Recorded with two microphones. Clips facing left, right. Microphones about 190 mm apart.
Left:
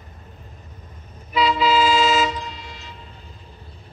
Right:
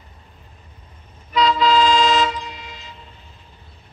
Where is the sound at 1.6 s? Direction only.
5° left (ahead or behind).